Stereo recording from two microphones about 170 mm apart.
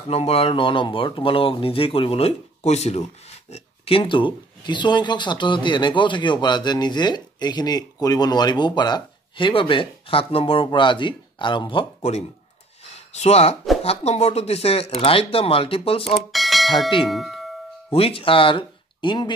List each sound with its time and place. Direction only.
0.1 s speech: 35° left (ahead or behind)
16.3 s bell: centre (ahead or behind)
17.0 s tubular bells: centre (ahead or behind)
17.9 s speech: 35° left (ahead or behind)